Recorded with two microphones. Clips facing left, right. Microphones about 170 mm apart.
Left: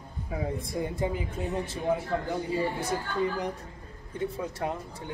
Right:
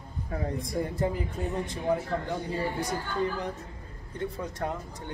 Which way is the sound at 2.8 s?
10° left (ahead or behind).